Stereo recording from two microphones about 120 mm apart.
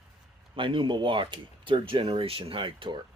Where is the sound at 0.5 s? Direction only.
45° right (ahead or behind).